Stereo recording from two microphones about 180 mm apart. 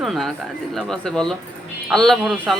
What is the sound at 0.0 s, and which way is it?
Speech, centre (ahead or behind).